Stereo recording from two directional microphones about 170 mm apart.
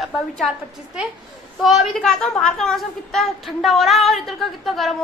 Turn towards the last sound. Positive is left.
turn(degrees=0)  # may be behind; listen again after turning